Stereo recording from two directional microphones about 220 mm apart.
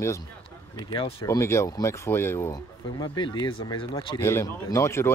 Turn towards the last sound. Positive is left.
turn(degrees=10)  # may be behind; listen again after turning